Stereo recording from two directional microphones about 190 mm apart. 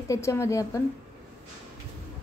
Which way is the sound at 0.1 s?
15° left (ahead or behind).